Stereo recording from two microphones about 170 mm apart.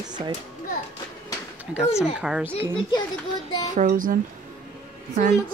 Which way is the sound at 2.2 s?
5° right (ahead or behind).